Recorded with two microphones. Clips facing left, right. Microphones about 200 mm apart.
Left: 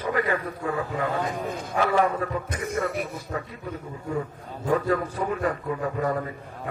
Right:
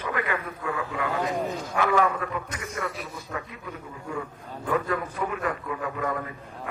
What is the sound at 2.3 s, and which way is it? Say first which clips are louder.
A man's voice: left 5 dB; 30° left (ahead or behind).